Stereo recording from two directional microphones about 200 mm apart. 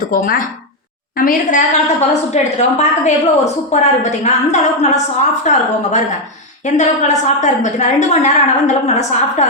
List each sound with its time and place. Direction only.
0.1 s a woman's voice: 45° left (ahead or behind)